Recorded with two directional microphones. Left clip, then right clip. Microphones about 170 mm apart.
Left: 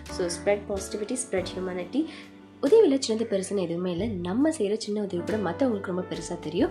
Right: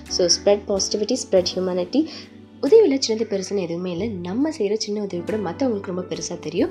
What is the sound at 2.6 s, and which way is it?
A woman's voice, 5° right (ahead or behind).